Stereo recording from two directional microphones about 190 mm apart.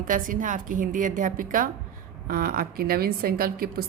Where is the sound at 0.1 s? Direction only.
45° right (ahead or behind).